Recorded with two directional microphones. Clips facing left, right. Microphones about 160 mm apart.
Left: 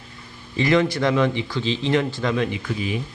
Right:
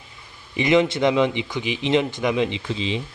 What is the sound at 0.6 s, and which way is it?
Speech, 20° right (ahead or behind).